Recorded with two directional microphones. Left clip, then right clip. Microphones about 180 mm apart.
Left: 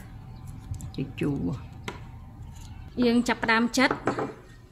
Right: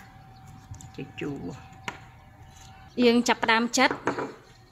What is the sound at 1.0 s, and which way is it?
Speech, 80° left.